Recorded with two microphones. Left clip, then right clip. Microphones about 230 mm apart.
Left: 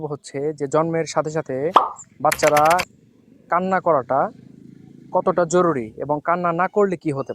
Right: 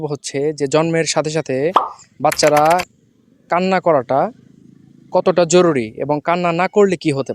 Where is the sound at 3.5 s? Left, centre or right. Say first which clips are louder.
Right 4 dB; right.